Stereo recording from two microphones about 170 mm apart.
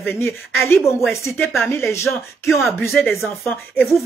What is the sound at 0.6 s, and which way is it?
Speech, 15° left (ahead or behind).